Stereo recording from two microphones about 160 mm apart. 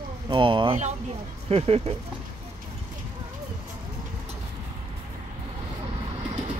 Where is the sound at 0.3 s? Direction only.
30° right (ahead or behind).